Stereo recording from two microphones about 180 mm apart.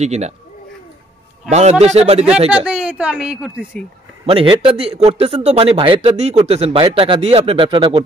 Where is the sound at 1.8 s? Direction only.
35° right (ahead or behind).